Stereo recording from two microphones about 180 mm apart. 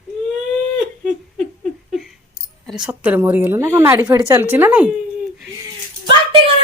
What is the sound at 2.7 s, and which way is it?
A woman's voice, 5° right (ahead or behind).